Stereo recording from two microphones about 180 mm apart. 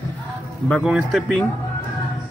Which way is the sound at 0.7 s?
Centre (ahead or behind).